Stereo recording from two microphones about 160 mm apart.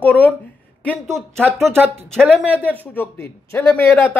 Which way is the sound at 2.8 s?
10° left (ahead or behind).